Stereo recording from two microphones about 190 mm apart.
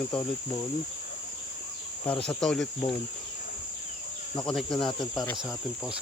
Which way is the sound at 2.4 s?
Centre (ahead or behind).